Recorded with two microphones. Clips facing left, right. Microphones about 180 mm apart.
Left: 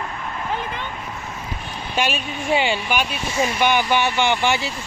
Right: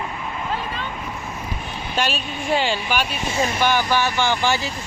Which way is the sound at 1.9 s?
15° left (ahead or behind).